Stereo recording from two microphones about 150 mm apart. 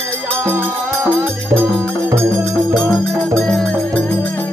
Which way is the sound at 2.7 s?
5° left (ahead or behind).